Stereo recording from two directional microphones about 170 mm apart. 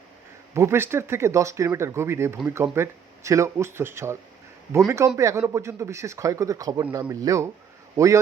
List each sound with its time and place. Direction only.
0.5 s speech: 15° right (ahead or behind)